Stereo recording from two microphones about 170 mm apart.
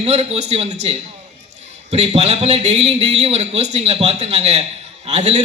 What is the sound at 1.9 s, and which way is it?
A man's voice, 40° right (ahead or behind).